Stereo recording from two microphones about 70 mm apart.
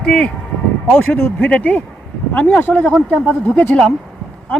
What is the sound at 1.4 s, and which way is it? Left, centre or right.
A woman's voice, left.